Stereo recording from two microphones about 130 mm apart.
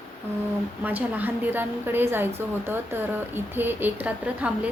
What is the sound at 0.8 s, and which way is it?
A woman's voice, 15° right (ahead or behind).